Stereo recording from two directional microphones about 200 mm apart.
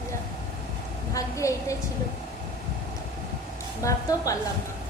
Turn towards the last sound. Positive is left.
turn(degrees=15)  # may be behind; listen again after turning